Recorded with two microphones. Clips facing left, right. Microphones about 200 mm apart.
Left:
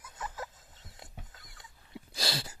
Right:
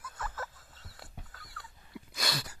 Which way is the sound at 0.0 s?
20° left (ahead or behind).